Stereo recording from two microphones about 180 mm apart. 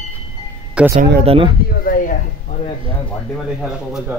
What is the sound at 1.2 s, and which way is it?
Speech, 30° right (ahead or behind).